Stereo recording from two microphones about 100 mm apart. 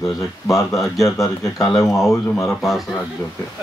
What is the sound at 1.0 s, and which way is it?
Speech, 35° left (ahead or behind).